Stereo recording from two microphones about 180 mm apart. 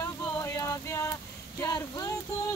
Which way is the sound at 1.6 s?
20° left (ahead or behind).